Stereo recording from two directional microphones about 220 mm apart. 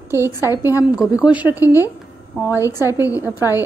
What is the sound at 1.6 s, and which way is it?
A woman's voice, 15° left (ahead or behind).